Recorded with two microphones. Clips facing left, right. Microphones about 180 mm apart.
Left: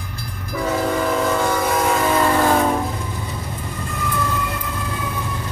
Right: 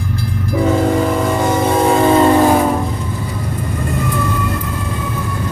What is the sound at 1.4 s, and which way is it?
Train, 25° right (ahead or behind).